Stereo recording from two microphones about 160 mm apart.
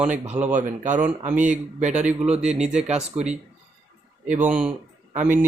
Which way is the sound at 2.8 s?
45° right (ahead or behind).